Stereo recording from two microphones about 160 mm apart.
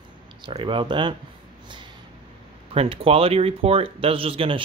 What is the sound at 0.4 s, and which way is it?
Speech, 30° right (ahead or behind).